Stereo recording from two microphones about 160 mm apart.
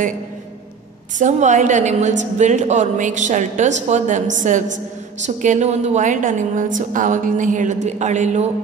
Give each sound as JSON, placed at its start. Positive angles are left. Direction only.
{"t": 1.2, "sound": "a woman's voice", "side_deg": -50}